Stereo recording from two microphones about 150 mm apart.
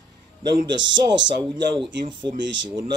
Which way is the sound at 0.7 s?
30° right (ahead or behind).